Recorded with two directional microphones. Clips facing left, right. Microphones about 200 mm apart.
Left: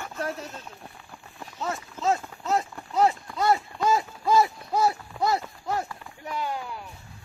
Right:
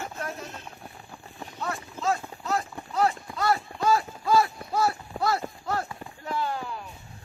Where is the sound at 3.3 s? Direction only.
20° left (ahead or behind).